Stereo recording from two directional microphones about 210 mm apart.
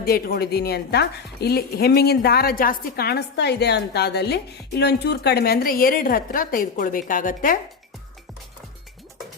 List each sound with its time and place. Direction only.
0.0 s a woman's voice: 45° left (ahead or behind)